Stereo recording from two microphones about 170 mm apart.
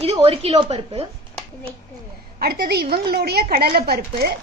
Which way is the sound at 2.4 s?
65° right (ahead or behind).